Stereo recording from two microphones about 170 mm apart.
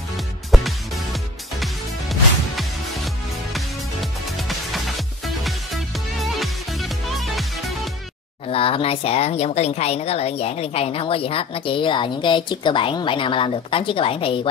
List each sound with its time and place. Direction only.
0.5 s music: centre (ahead or behind)
8.5 s speech: 30° left (ahead or behind)